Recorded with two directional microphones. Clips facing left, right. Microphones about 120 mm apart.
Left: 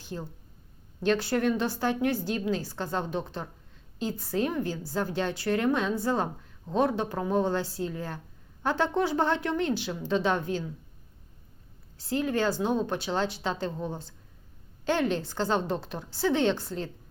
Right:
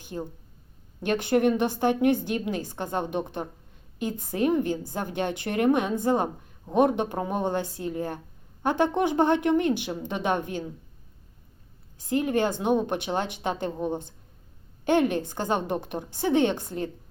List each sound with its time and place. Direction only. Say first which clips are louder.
0.0 s a woman's voice: right 3 dB; 15° right (ahead or behind)
11.9 s a woman's voice: right 3 dB; 15° right (ahead or behind)
15.1 s a woman's voice: right 1 dB; 15° right (ahead or behind)